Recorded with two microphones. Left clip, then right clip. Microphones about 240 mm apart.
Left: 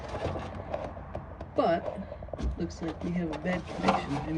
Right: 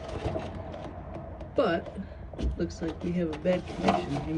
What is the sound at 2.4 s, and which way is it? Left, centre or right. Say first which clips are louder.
Speech: right 5 dB; centre.